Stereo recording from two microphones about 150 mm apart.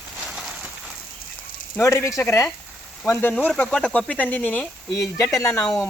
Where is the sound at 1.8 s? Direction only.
20° left (ahead or behind).